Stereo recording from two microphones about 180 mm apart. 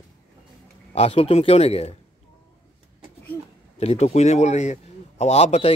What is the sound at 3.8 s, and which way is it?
Speech, 35° left (ahead or behind).